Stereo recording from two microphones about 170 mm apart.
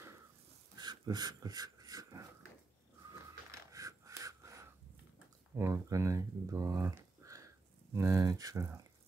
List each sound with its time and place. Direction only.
0.7 s dog: 25° right (ahead or behind)
3.5 s a sound: 20° right (ahead or behind)
5.6 s speech: 15° right (ahead or behind)